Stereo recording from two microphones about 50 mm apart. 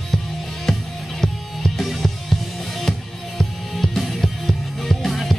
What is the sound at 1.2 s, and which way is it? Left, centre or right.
Music, centre.